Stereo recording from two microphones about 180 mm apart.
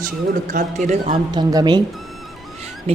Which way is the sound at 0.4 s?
45° right (ahead or behind).